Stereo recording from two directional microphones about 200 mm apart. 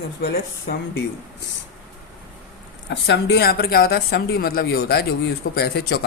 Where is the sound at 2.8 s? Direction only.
60° left (ahead or behind).